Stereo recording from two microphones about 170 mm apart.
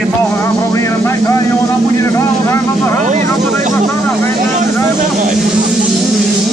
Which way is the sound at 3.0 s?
45° right (ahead or behind).